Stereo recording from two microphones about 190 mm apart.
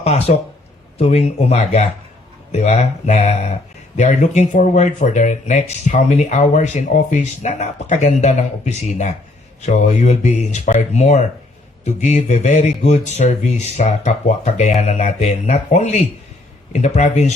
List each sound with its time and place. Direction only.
0.0 s speech: 35° left (ahead or behind)